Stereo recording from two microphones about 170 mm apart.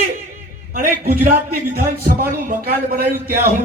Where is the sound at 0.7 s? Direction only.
55° right (ahead or behind).